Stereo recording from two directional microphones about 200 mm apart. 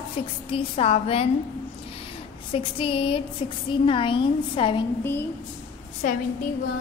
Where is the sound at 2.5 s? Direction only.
25° left (ahead or behind).